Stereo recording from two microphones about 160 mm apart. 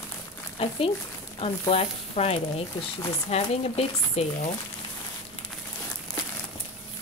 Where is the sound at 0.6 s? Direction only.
35° left (ahead or behind).